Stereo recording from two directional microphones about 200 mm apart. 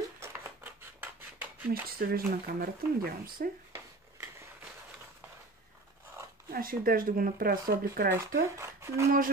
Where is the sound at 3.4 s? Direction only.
45° right (ahead or behind).